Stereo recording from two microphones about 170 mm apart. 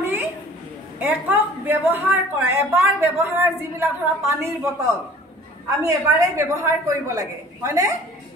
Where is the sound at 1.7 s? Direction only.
15° right (ahead or behind).